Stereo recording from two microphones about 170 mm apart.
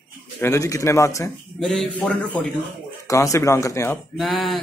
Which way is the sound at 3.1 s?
20° left (ahead or behind).